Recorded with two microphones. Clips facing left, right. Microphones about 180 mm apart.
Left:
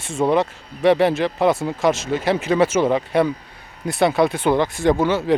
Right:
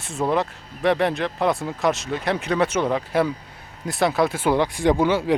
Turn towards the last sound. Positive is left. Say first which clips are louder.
# left 1 dB
turn(degrees=-10)  # may be behind; listen again after turning